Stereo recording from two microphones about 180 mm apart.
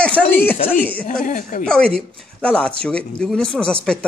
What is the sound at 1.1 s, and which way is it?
Speech, 50° left (ahead or behind).